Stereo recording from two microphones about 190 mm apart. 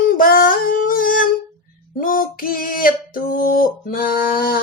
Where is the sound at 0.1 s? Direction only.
50° left (ahead or behind).